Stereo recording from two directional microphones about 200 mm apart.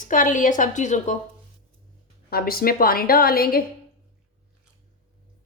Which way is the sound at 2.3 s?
50° left (ahead or behind).